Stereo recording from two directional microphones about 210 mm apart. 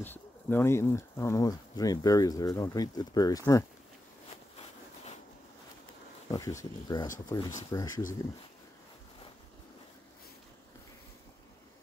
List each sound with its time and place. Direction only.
0.0 s speech: 10° left (ahead or behind)
6.3 s speech: 15° left (ahead or behind)